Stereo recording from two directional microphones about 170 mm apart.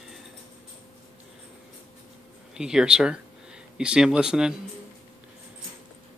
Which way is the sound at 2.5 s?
5° right (ahead or behind).